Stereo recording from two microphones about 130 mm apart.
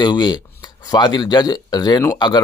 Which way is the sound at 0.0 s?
35° left (ahead or behind).